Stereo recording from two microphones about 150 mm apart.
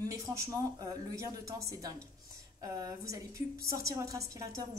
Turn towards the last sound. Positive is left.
turn(degrees=-20)  # may be behind; listen again after turning